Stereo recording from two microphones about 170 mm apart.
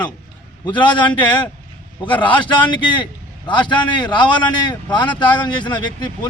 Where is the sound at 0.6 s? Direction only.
30° left (ahead or behind).